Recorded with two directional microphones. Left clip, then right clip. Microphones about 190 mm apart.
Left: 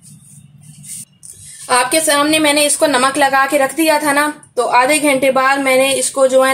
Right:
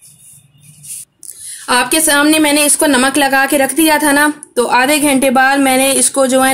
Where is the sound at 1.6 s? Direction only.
55° right (ahead or behind).